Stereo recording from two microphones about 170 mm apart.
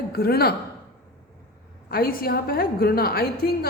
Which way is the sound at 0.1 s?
65° left (ahead or behind).